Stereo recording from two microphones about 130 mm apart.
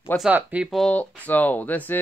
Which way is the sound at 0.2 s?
10° right (ahead or behind).